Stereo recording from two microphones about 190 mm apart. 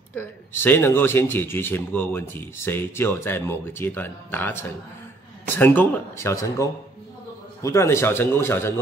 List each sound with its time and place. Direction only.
0.1 s speech: 10° left (ahead or behind)